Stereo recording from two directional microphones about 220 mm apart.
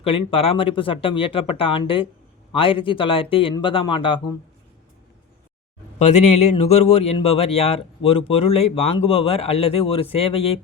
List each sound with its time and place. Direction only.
0.0 s speech: 25° left (ahead or behind)
6.0 s speech: 30° left (ahead or behind)